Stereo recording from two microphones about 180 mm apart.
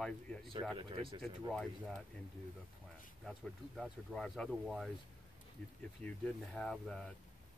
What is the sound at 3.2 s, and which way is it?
Speech, centre (ahead or behind).